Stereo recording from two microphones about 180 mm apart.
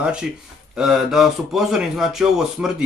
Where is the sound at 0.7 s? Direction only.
5° right (ahead or behind).